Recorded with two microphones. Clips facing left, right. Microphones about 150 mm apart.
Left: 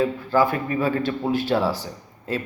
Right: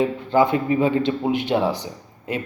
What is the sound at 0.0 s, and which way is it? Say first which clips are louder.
Speech: right 2 dB; 20° right (ahead or behind).